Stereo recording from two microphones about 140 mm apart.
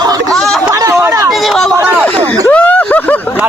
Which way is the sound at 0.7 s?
20° right (ahead or behind).